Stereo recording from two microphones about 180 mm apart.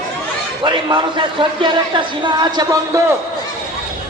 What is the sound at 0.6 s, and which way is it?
A man's voice, 25° right (ahead or behind).